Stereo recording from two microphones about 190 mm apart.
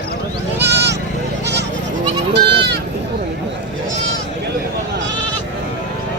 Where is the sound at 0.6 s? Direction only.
65° right (ahead or behind).